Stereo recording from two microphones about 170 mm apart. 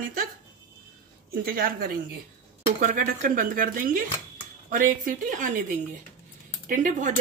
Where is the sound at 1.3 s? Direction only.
60° right (ahead or behind).